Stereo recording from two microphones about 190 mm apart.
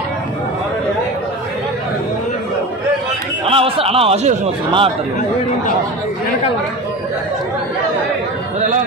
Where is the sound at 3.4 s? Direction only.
30° right (ahead or behind).